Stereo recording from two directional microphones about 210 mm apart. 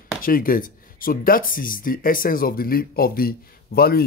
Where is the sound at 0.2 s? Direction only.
40° left (ahead or behind).